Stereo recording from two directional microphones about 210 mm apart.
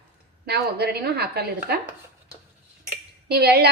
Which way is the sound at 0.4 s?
50° right (ahead or behind).